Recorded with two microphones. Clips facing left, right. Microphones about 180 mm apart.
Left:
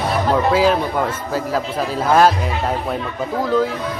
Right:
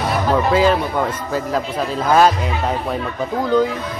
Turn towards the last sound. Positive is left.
turn(degrees=0)  # may be behind; listen again after turning